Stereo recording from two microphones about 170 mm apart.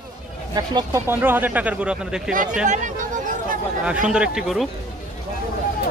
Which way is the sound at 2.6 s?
45° right (ahead or behind).